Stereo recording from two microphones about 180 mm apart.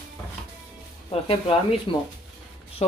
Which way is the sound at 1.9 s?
30° left (ahead or behind).